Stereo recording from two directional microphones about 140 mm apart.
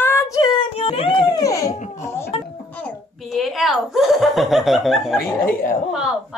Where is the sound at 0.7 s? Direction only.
45° left (ahead or behind); by 1.7 s 25° left (ahead or behind).